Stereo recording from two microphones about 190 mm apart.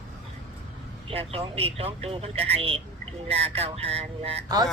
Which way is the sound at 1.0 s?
30° right (ahead or behind).